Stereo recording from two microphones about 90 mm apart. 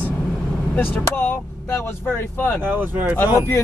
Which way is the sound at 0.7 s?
20° left (ahead or behind).